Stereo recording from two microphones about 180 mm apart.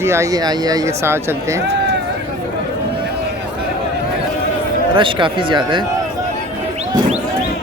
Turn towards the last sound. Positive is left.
turn(degrees=-25)  # may be behind; listen again after turning